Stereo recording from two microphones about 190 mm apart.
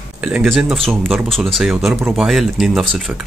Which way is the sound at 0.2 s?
5° right (ahead or behind).